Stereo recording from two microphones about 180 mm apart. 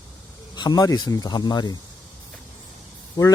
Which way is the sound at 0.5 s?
25° left (ahead or behind).